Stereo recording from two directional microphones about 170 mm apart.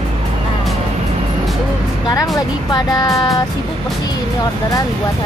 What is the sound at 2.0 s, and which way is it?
Speech, 20° left (ahead or behind).